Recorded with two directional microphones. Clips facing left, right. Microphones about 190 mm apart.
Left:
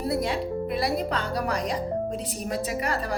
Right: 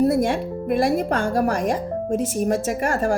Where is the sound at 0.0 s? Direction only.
45° right (ahead or behind).